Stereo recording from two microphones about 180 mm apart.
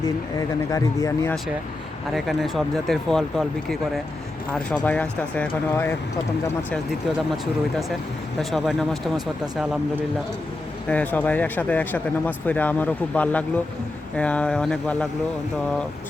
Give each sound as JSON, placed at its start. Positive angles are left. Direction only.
{"t": 0.3, "sound": "speech", "side_deg": 20}
{"t": 2.1, "sound": "speech", "side_deg": 0}
{"t": 8.4, "sound": "speech", "side_deg": 0}